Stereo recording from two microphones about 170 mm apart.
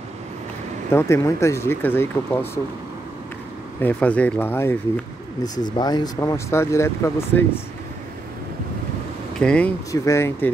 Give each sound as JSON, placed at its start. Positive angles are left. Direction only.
{"t": 0.9, "sound": "speech", "side_deg": 15}
{"t": 3.8, "sound": "speech", "side_deg": 10}
{"t": 5.8, "sound": "speech", "side_deg": 25}
{"t": 9.4, "sound": "speech", "side_deg": 5}